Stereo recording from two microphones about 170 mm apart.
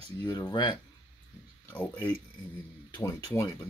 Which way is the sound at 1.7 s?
10° left (ahead or behind).